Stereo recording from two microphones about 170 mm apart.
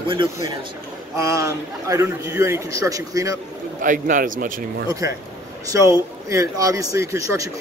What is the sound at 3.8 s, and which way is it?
Speech, 50° right (ahead or behind).